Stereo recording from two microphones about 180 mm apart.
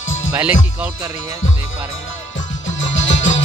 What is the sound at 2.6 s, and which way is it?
Music, 90° left.